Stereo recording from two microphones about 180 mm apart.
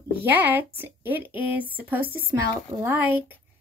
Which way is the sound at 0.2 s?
10° right (ahead or behind).